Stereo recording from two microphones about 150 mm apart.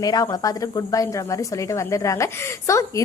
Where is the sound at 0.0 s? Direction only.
25° left (ahead or behind).